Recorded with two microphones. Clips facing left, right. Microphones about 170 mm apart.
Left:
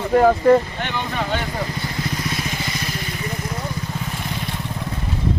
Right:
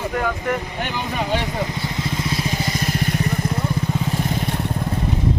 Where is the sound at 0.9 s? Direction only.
5° right (ahead or behind).